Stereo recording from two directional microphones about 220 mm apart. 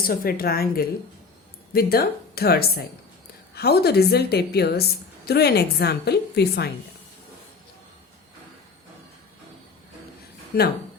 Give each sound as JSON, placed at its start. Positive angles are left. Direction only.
{"t": 0.1, "sound": "a woman's voice", "side_deg": 45}